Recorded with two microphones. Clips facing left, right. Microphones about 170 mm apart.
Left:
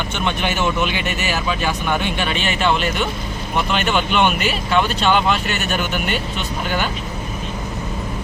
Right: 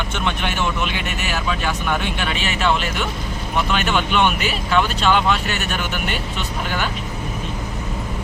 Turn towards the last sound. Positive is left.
turn(degrees=0)  # may be behind; listen again after turning